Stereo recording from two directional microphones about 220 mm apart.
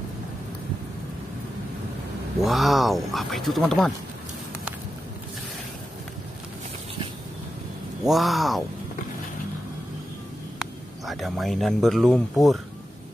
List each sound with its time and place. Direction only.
2.4 s speech: centre (ahead or behind)
8.0 s speech: centre (ahead or behind)
10.6 s speech: centre (ahead or behind)